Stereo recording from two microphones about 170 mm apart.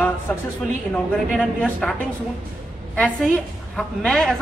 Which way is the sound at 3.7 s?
5° left (ahead or behind).